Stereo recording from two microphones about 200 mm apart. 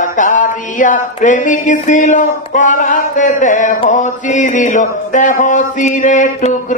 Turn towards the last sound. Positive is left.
turn(degrees=40)  # may be behind; listen again after turning